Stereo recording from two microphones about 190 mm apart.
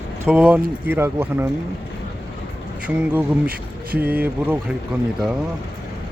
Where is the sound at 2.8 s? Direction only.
10° right (ahead or behind).